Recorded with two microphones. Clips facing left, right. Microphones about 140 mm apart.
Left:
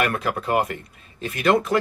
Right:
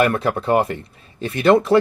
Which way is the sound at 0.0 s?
30° right (ahead or behind).